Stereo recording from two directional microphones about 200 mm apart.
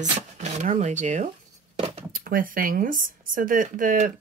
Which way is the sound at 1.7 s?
30° right (ahead or behind).